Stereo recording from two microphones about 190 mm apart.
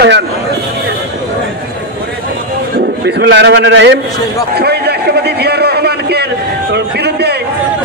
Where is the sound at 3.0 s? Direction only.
65° right (ahead or behind).